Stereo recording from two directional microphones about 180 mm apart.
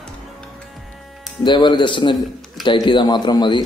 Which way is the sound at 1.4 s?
25° left (ahead or behind).